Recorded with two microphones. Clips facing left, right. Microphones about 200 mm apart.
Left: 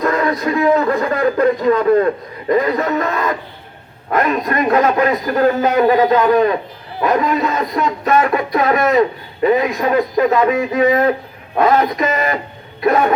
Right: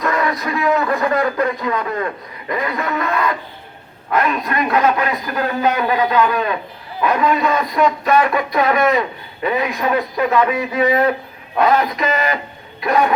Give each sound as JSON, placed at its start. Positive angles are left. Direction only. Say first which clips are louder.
{"t": 0.0, "sound": "a man's voice", "louder": "left 3 dB", "side_deg": 30}
{"t": 4.1, "sound": "speech", "louder": "left 2 dB", "side_deg": 45}